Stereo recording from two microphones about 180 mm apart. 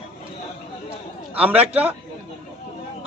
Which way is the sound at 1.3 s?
10° right (ahead or behind).